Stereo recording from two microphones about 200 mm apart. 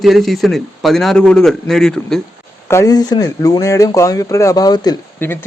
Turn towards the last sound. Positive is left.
turn(degrees=10)  # may be behind; listen again after turning